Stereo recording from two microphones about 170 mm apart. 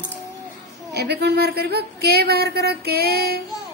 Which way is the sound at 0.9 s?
75° right (ahead or behind).